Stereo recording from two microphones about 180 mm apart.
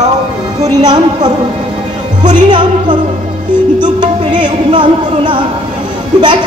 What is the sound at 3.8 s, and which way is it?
Music, 25° right (ahead or behind).